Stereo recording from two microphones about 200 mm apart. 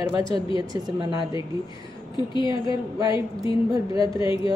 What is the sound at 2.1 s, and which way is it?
Speech, 25° left (ahead or behind).